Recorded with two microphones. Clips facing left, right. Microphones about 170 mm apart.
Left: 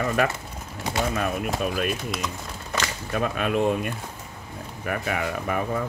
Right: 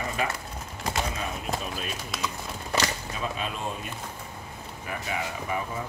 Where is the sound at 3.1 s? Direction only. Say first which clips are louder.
Left 11 dB; 60° left (ahead or behind).